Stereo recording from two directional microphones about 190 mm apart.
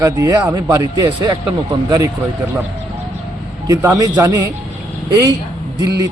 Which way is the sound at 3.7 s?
15° right (ahead or behind).